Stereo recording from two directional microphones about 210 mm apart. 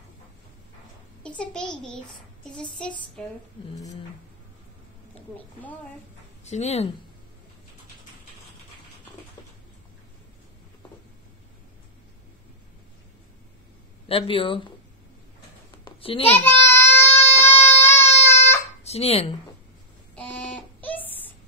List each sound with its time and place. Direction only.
1.2 s a child's voice: 5° left (ahead or behind)
2.8 s speech: 5° left (ahead or behind)
5.3 s a woman's voice: 10° left (ahead or behind)
6.5 s speech: 30° left (ahead or behind)
14.0 s speech: 25° left (ahead or behind)
15.8 s a sound: 25° left (ahead or behind)
16.3 s baby cry: 10° left (ahead or behind)
18.1 s a sound: 10° left (ahead or behind)
18.9 s speech: 30° left (ahead or behind)
20.2 s a sound: 5° left (ahead or behind)